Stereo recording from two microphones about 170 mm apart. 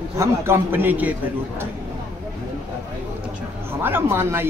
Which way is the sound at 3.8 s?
15° right (ahead or behind).